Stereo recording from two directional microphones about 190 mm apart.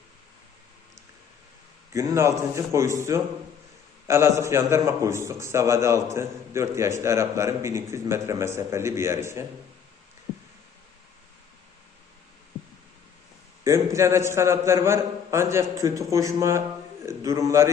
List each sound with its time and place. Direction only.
1.9 s a man's voice: 15° right (ahead or behind)
13.7 s a man's voice: 15° right (ahead or behind)